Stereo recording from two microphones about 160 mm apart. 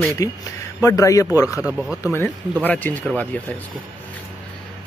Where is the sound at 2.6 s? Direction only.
10° left (ahead or behind).